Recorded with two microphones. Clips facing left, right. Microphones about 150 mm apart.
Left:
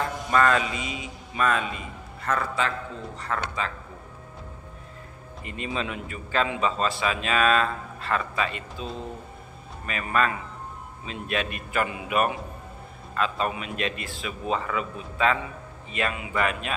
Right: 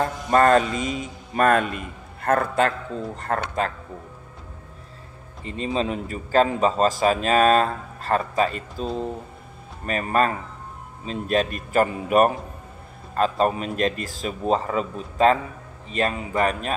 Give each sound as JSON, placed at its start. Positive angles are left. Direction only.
{"t": 0.0, "sound": "a man's voice", "side_deg": -45}
{"t": 5.4, "sound": "speech", "side_deg": -30}